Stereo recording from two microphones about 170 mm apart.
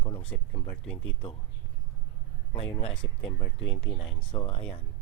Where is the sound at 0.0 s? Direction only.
30° left (ahead or behind).